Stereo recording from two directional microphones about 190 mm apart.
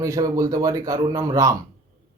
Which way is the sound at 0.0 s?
15° right (ahead or behind).